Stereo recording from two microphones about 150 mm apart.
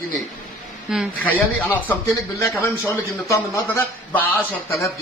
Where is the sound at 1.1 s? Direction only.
10° left (ahead or behind).